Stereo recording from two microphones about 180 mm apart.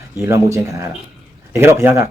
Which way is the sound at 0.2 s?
15° right (ahead or behind).